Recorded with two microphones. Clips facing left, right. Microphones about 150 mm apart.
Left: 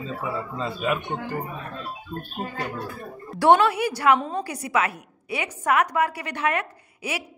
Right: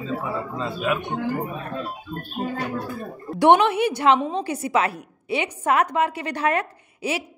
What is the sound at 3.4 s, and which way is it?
A woman's voice, 20° right (ahead or behind).